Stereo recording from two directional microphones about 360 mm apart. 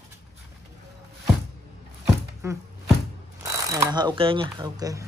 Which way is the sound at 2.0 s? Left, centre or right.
Centre.